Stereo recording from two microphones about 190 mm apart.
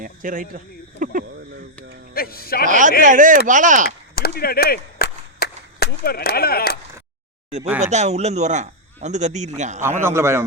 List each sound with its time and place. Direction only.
0.0 s speech: 45° right (ahead or behind)
2.1 s a man's voice: 50° left (ahead or behind)
2.6 s speech: 40° right (ahead or behind)
3.8 s a sound: 55° left (ahead or behind)
7.8 s speech: 35° right (ahead or behind)
10.0 s a man's voice: 15° right (ahead or behind)